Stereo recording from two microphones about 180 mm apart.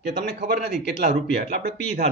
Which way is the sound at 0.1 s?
65° right (ahead or behind).